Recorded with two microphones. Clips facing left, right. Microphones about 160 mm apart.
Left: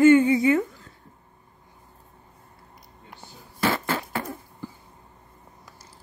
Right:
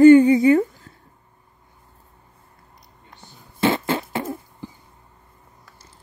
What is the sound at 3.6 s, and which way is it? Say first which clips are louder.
Fart: right 5 dB; 25° right (ahead or behind).